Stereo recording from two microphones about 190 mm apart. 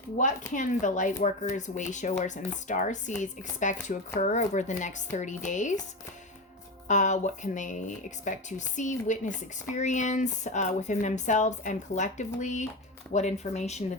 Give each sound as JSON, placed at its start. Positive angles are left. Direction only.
{"t": 0.2, "sound": "speech", "side_deg": 40}
{"t": 6.8, "sound": "speech", "side_deg": 40}